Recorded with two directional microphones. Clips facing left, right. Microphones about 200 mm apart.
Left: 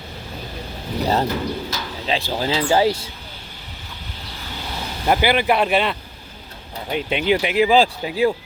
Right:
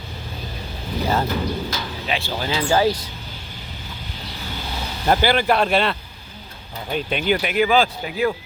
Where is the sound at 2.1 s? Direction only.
30° left (ahead or behind).